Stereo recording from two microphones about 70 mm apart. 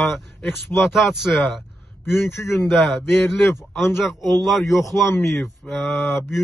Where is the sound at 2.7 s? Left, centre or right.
Centre.